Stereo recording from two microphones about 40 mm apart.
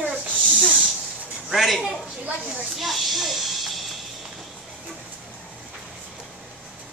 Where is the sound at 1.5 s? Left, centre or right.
Centre.